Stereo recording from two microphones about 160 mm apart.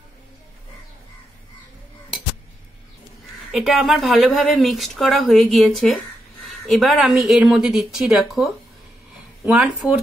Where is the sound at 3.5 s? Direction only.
Centre (ahead or behind).